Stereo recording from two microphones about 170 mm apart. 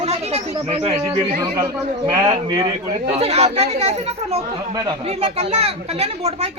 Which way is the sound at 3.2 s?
40° right (ahead or behind).